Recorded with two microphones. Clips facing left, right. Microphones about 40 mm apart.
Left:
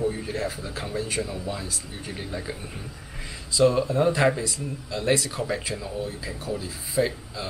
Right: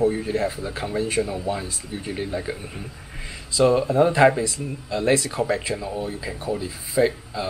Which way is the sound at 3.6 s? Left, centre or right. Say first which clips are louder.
Right 3 dB; centre.